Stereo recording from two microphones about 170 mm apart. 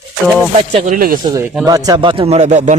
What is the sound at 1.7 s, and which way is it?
A man's voice, 20° right (ahead or behind).